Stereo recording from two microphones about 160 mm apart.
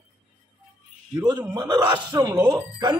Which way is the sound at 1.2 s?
25° right (ahead or behind).